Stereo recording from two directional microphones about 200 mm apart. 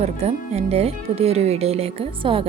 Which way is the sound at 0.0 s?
30° right (ahead or behind).